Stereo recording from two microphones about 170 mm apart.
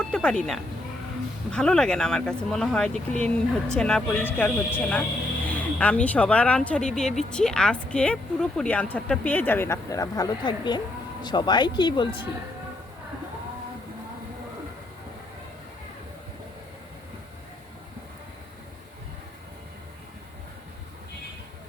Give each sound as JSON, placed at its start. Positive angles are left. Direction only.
{"t": 0.1, "sound": "speech", "side_deg": 5}